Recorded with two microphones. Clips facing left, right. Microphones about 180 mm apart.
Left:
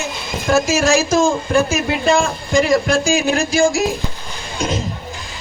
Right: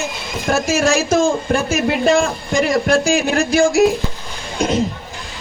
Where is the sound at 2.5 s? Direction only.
60° right (ahead or behind).